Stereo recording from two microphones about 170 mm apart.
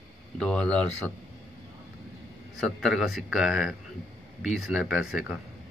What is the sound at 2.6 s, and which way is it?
Speech, centre (ahead or behind).